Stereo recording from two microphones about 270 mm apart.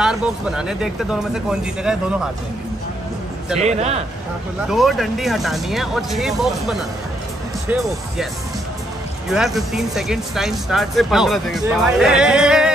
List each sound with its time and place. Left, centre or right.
0.0 s speech: centre
3.5 s a man's voice: right
4.6 s speech: centre
9.3 s speech: centre